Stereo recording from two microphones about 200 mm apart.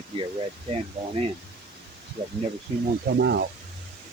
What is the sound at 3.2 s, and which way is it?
Speech, 60° right (ahead or behind).